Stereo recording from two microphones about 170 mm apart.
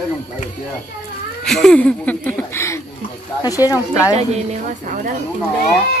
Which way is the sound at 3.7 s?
20° left (ahead or behind).